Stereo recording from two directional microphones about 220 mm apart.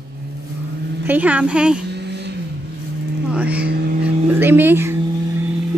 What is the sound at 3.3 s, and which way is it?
Speech, 5° right (ahead or behind).